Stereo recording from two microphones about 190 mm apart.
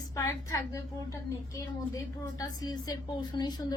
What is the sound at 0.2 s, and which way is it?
Speech, 15° left (ahead or behind).